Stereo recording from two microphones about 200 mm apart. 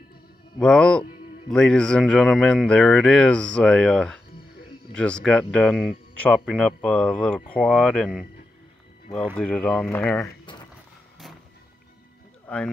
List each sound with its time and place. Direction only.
0.6 s speech: 5° left (ahead or behind)
9.4 s speech: 5° left (ahead or behind)
10.2 s a sound: 25° left (ahead or behind)